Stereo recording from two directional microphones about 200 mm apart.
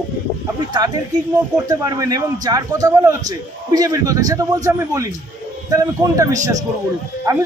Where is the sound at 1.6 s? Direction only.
15° right (ahead or behind).